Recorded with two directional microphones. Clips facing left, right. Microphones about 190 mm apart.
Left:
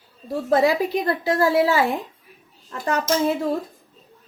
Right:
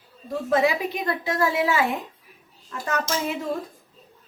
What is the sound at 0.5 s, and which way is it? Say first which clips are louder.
A woman's voice: left 4 dB; 35° left (ahead or behind).